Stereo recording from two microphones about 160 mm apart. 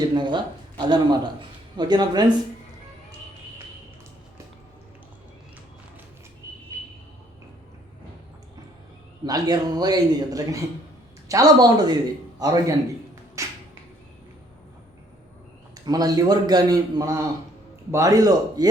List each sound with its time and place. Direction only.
0.0 s a man's voice: 30° right (ahead or behind)
9.2 s a man's voice: 25° right (ahead or behind)
13.4 s finger snapping: 20° right (ahead or behind)
15.9 s a man's voice: 25° right (ahead or behind)